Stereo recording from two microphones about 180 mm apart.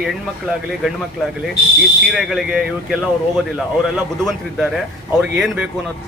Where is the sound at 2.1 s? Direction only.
Centre (ahead or behind).